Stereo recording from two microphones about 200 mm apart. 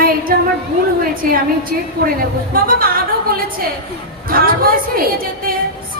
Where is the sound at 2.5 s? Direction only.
45° right (ahead or behind).